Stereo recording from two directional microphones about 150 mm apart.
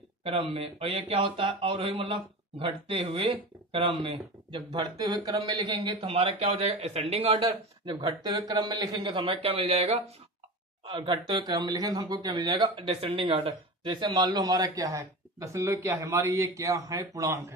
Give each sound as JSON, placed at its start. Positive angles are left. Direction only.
{"t": 0.2, "sound": "a man's voice", "side_deg": -40}
{"t": 5.9, "sound": "a man's voice", "side_deg": -35}
{"t": 10.9, "sound": "speech", "side_deg": -25}